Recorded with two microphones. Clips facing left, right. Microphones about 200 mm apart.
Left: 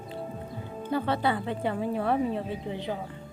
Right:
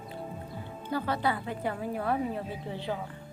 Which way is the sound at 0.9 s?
25° left (ahead or behind).